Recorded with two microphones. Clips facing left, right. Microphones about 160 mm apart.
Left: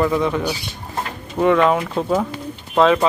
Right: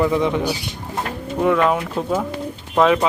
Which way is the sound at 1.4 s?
Centre (ahead or behind).